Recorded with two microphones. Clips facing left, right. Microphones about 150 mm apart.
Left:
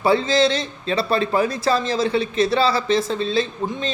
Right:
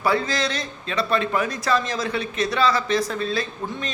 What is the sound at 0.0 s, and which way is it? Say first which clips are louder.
Speech: left 6 dB; 25° left (ahead or behind).